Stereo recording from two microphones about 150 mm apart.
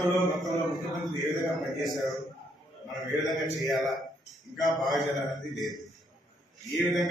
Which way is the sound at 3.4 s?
Centre (ahead or behind).